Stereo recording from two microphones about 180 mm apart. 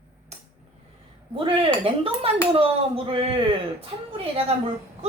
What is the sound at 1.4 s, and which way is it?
A woman's voice, 30° right (ahead or behind).